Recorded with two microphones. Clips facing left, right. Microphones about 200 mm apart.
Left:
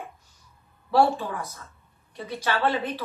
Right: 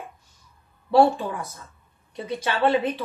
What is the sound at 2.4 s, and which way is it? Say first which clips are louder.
Speech: right 2 dB; 25° right (ahead or behind).